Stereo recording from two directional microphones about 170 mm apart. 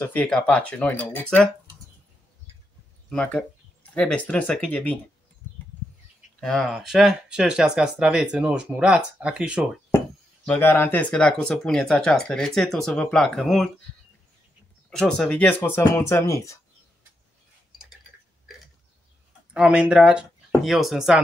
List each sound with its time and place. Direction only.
0.0 s speech: 10° left (ahead or behind)
3.1 s speech: 5° left (ahead or behind)
6.4 s speech: centre (ahead or behind)
10.4 s speech: 10° left (ahead or behind)
14.9 s speech: 5° left (ahead or behind)
19.5 s speech: 5° right (ahead or behind)